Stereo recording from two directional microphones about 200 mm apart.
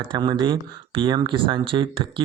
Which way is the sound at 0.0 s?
25° right (ahead or behind).